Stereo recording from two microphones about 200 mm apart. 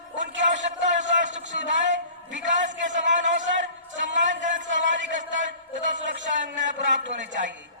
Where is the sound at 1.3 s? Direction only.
65° right (ahead or behind).